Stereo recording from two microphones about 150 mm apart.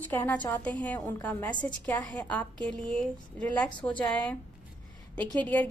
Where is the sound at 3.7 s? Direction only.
30° left (ahead or behind).